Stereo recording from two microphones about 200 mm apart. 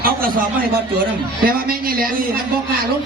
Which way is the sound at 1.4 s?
45° right (ahead or behind).